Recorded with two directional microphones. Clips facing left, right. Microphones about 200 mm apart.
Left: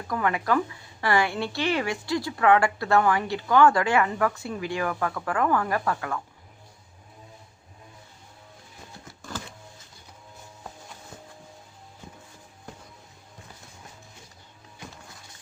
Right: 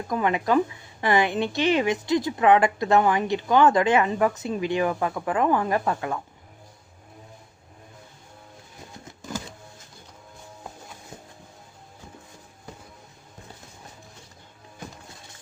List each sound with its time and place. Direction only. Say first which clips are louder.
0.1 s a woman's voice: right 3 dB; 20° right (ahead or behind)